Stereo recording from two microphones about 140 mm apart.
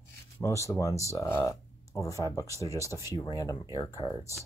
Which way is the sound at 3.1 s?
25° left (ahead or behind).